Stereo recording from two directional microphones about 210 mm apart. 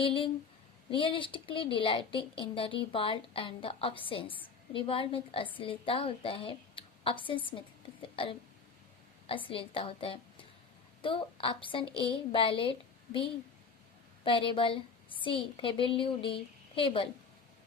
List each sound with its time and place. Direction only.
0.0 s a woman's voice: 25° left (ahead or behind)
14.3 s a woman's voice: 25° left (ahead or behind)